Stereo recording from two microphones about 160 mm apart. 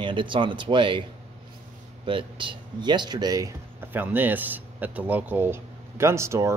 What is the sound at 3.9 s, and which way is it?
Speech, 10° right (ahead or behind).